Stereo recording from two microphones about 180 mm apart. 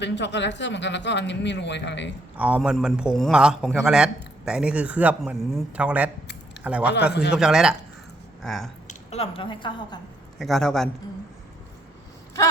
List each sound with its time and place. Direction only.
0.0 s speech: 80° left
2.3 s a man's voice: 10° right (ahead or behind)
8.9 s a woman's voice: 35° left (ahead or behind)
10.3 s a man's voice: centre (ahead or behind)